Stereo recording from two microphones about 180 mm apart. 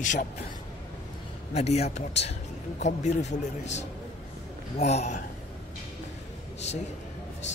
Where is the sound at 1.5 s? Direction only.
35° left (ahead or behind).